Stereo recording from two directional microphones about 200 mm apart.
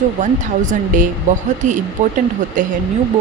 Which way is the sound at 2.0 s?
40° right (ahead or behind).